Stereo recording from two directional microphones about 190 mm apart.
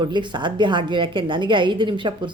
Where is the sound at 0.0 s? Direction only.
25° right (ahead or behind).